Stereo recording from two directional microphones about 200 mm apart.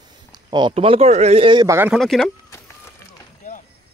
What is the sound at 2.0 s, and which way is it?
Speech, centre (ahead or behind).